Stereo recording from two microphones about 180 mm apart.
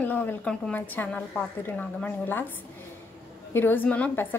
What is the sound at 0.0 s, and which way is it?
A woman's voice, 10° left (ahead or behind).